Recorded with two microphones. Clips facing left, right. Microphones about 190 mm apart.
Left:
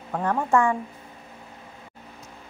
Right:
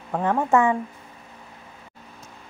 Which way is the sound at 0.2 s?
5° right (ahead or behind).